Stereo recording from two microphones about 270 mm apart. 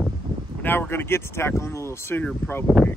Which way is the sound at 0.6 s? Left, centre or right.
Centre.